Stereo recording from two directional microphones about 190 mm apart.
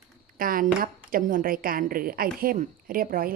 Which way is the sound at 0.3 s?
45° right (ahead or behind).